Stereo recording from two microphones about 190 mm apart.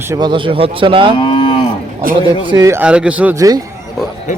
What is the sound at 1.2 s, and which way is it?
Cattle, 25° left (ahead or behind).